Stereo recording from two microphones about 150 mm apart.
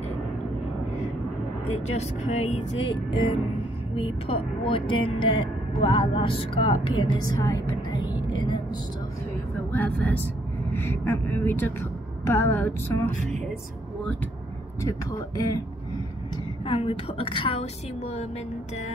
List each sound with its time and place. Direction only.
1.7 s speech: 50° left (ahead or behind)
3.9 s speech: 35° left (ahead or behind)
7.3 s speech: 20° left (ahead or behind)
9.7 s a woman's voice: 10° left (ahead or behind)
14.8 s speech: 20° left (ahead or behind)
16.6 s speech: 40° left (ahead or behind)